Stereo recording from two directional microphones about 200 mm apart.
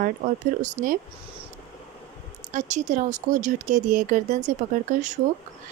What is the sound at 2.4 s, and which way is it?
A woman's voice, 35° right (ahead or behind).